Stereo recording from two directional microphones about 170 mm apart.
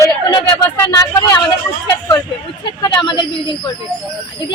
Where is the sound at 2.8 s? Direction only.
30° left (ahead or behind).